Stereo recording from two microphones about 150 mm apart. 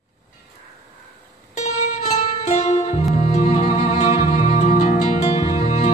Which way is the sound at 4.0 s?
50° left (ahead or behind).